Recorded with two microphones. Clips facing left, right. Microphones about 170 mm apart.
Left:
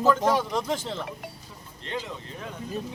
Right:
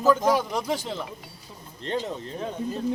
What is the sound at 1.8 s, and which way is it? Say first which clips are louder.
Speech: right 5 dB; 35° right (ahead or behind).